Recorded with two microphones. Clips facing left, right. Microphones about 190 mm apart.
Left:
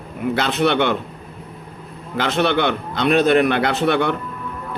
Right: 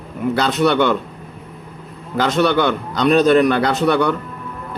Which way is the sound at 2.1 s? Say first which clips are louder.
Right 3 dB; 40° right (ahead or behind).